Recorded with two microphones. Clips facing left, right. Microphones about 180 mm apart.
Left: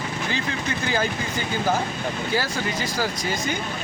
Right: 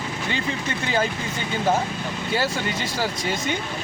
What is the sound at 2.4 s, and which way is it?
Speech, 25° right (ahead or behind).